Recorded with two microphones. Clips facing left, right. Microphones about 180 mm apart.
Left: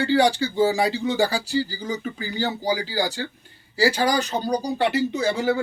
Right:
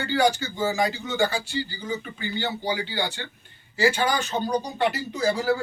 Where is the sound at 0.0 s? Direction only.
30° left (ahead or behind).